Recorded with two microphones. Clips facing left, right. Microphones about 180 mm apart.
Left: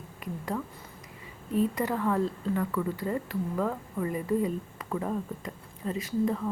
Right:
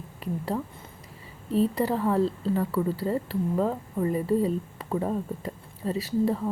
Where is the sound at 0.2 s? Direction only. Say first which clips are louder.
Right 4 dB; 30° right (ahead or behind).